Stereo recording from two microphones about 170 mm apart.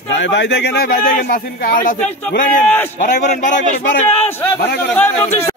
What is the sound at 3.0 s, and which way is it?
Speech, 50° left (ahead or behind).